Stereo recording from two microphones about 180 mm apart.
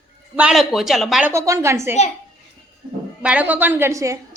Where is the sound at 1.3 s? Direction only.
15° right (ahead or behind).